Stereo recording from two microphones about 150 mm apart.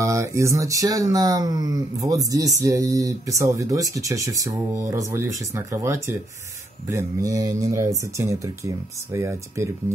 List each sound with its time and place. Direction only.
0.0 s speech: 20° right (ahead or behind)